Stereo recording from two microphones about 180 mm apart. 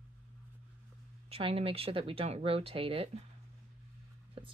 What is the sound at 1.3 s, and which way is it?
Speech, 30° right (ahead or behind).